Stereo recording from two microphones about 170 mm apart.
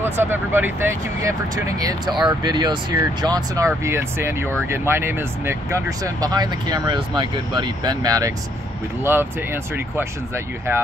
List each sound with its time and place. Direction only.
0.2 s speech: 10° right (ahead or behind)